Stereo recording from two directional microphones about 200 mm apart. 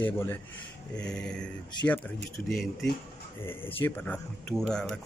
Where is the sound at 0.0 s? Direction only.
10° left (ahead or behind).